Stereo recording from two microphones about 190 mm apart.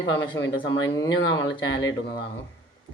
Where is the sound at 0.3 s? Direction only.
85° left.